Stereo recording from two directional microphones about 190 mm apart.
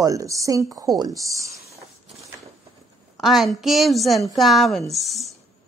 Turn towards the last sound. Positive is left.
turn(degrees=0)  # may be behind; listen again after turning